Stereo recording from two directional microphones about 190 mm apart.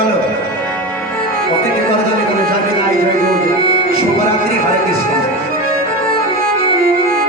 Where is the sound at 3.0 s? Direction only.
50° right (ahead or behind).